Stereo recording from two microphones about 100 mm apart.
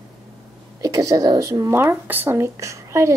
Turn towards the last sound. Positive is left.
turn(degrees=-30)  # may be behind; listen again after turning